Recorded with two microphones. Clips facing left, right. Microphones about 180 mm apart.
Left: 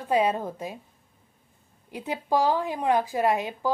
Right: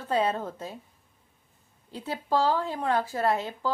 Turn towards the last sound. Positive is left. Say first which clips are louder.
# left 2 dB
turn(degrees=15)  # may be behind; listen again after turning